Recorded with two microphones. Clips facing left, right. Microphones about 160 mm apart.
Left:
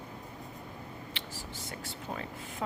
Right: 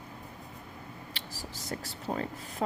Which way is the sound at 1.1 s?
40° right (ahead or behind).